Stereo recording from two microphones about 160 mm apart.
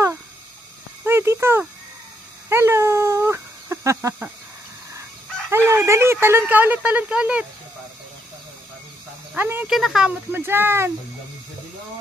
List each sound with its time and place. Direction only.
1.0 s a sound: 15° right (ahead or behind)
5.5 s speech: 15° right (ahead or behind)
9.3 s speech: 10° right (ahead or behind)